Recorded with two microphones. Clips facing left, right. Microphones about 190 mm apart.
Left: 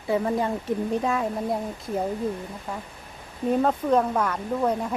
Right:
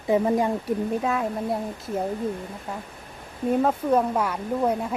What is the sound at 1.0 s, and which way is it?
Speech, centre (ahead or behind).